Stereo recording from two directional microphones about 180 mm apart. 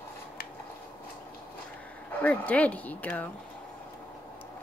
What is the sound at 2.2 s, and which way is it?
A woman's voice, 10° left (ahead or behind).